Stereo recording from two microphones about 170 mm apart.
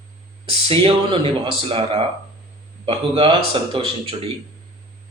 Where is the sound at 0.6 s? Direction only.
30° right (ahead or behind).